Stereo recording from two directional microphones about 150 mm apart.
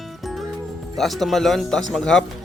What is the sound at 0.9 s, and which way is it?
Speech, centre (ahead or behind).